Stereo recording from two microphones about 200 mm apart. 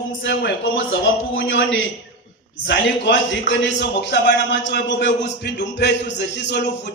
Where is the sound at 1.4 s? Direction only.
75° left (ahead or behind).